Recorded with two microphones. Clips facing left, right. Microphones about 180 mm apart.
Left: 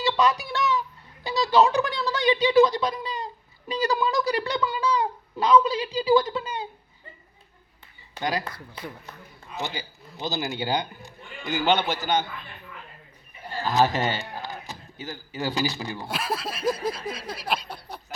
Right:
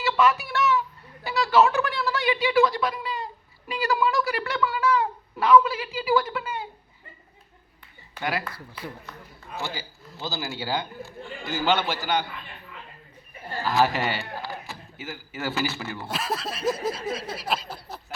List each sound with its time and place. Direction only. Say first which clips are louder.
0.0 s speech: right 1 dB; 15° left (ahead or behind)
8.1 s speech: left 1 dB; 20° left (ahead or behind)
9.6 s speech: left 1 dB; 20° left (ahead or behind)
13.7 s a man's voice: left 1 dB; 20° left (ahead or behind)
16.0 s speech: right 1 dB; centre (ahead or behind)
16.6 s a sound: even; 25° right (ahead or behind)
17.4 s speech: even; centre (ahead or behind)